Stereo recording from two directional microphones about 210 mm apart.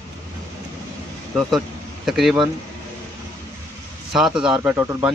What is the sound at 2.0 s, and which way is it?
Speech, centre (ahead or behind).